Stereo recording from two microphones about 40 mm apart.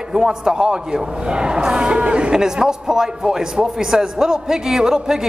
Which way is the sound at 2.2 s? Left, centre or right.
Centre.